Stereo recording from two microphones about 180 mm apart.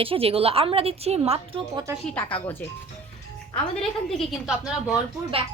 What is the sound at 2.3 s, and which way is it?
Speech, 30° left (ahead or behind).